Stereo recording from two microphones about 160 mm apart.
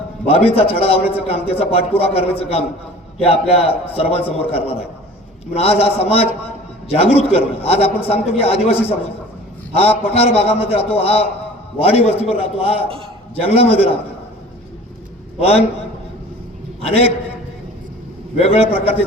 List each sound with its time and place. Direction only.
0.3 s a man's voice: 35° left (ahead or behind)
15.4 s a man's voice: 40° left (ahead or behind)
16.8 s a man's voice: 40° left (ahead or behind)
18.3 s a man's voice: 40° left (ahead or behind)